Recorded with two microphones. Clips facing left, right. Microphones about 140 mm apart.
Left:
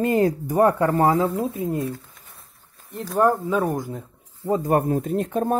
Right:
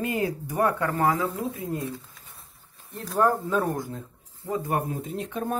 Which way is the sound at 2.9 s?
5° left (ahead or behind).